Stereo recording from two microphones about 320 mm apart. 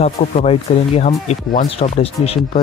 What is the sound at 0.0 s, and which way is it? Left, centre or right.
Speech, centre.